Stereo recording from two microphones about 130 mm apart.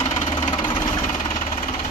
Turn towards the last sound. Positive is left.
turn(degrees=35)  # may be behind; listen again after turning